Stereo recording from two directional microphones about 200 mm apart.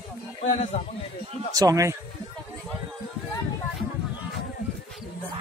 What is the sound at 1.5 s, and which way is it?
Speech, 15° right (ahead or behind).